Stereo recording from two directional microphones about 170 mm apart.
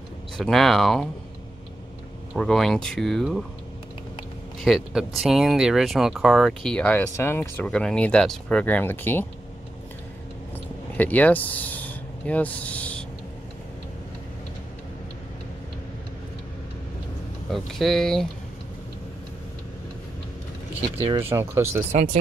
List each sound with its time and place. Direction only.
0.4 s speech: centre (ahead or behind)
2.3 s speech: 5° left (ahead or behind)
4.6 s speech: centre (ahead or behind)
11.0 s speech: 10° left (ahead or behind)
17.5 s speech: centre (ahead or behind)
21.1 s speech: 15° right (ahead or behind)
21.9 s speech: 45° right (ahead or behind)